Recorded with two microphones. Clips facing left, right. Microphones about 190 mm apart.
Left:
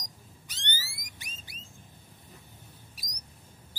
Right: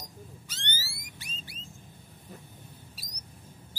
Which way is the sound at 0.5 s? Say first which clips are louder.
Right 1 dB; 15° left (ahead or behind).